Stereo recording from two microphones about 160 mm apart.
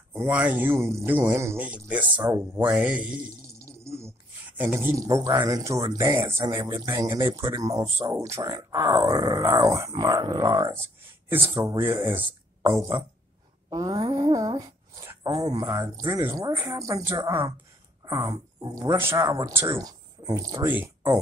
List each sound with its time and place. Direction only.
0.3 s speech: 10° right (ahead or behind)
2.1 s speech: 20° right (ahead or behind)
13.7 s dog: 25° right (ahead or behind)
15.4 s speech: 20° right (ahead or behind)